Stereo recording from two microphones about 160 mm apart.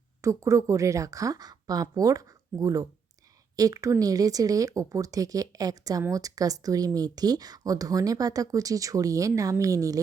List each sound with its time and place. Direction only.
0.2 s speech: 20° right (ahead or behind)